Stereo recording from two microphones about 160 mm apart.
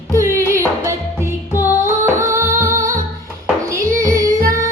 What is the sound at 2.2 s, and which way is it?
Music, 15° right (ahead or behind).